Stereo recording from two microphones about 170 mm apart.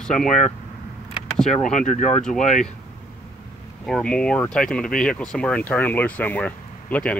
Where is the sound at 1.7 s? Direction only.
45° left (ahead or behind).